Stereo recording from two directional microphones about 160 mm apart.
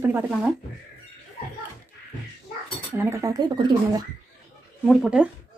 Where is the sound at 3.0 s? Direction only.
15° right (ahead or behind).